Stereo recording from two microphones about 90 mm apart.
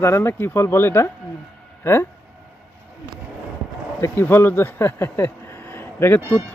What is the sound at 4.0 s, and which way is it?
Speech, 30° left (ahead or behind).